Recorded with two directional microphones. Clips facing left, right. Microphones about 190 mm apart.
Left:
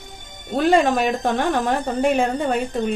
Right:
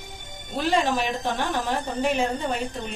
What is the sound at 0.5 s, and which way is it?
A woman's voice, 55° left (ahead or behind).